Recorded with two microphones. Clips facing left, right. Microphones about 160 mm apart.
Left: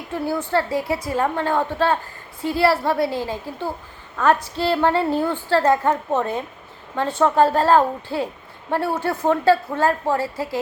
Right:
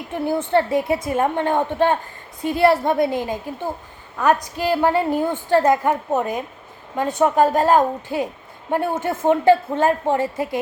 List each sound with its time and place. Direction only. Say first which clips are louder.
0.1 s a woman's voice: right 3 dB; 20° right (ahead or behind)